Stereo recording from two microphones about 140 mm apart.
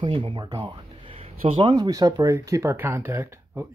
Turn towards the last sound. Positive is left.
turn(degrees=-15)  # may be behind; listen again after turning